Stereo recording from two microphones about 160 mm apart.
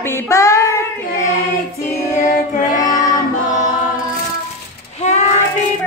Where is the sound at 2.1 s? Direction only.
55° left (ahead or behind).